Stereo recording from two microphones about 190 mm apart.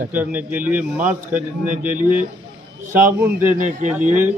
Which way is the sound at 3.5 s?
45° right (ahead or behind).